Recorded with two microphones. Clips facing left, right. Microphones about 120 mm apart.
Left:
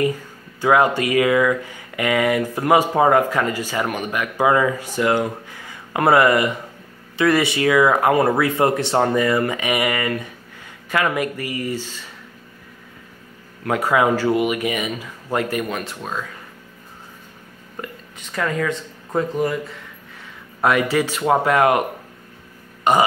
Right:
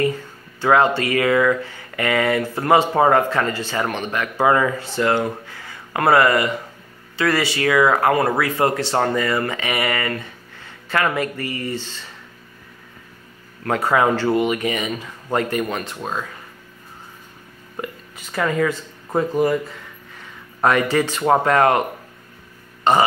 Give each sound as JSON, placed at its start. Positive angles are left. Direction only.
{"t": 0.6, "sound": "speech", "side_deg": 10}
{"t": 13.7, "sound": "speech", "side_deg": 10}
{"t": 17.7, "sound": "speech", "side_deg": -5}
{"t": 22.9, "sound": "speech", "side_deg": 10}